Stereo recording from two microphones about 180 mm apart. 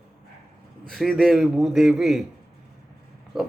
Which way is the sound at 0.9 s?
5° left (ahead or behind).